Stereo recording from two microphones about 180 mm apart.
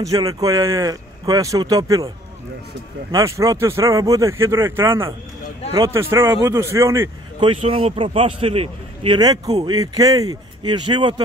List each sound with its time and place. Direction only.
0.0 s speech: 20° right (ahead or behind)
3.1 s speech: 15° right (ahead or behind)
7.3 s a man's voice: 30° right (ahead or behind)
9.8 s speech: 20° right (ahead or behind)